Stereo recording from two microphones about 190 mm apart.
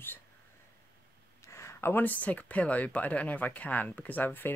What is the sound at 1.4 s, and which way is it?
Speech, 15° left (ahead or behind).